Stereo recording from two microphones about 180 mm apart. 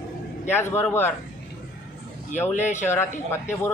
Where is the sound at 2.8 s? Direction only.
15° left (ahead or behind).